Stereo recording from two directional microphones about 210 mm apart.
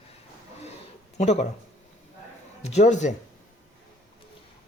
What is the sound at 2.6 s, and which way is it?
Speech, 30° left (ahead or behind).